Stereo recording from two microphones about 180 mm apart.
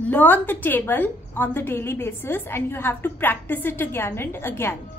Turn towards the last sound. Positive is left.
turn(degrees=15)  # may be behind; listen again after turning